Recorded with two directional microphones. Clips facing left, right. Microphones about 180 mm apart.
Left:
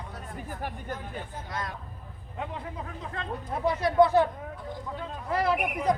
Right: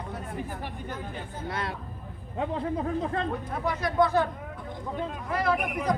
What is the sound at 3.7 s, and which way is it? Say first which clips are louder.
Speech: left 3 dB; 30° left (ahead or behind).